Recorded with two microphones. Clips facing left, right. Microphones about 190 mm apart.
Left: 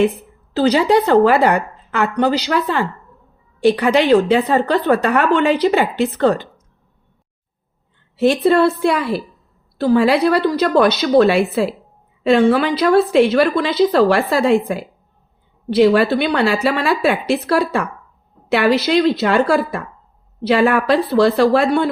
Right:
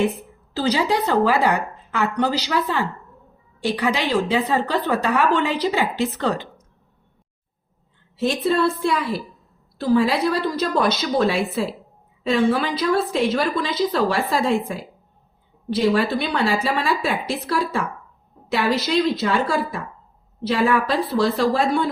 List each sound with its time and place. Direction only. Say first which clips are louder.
0.5 s a woman's voice: left 7 dB; 60° left (ahead or behind)
8.1 s a woman's voice: left 7 dB; 65° left (ahead or behind)